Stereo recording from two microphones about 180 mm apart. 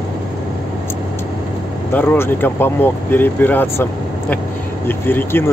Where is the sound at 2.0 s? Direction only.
10° left (ahead or behind).